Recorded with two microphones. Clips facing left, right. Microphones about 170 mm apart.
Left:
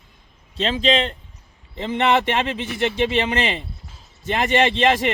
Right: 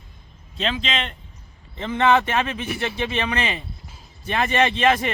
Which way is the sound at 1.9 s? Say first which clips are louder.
Even; 25° left (ahead or behind).